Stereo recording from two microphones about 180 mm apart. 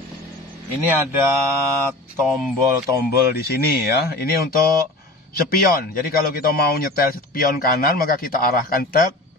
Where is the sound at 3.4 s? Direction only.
60° left (ahead or behind).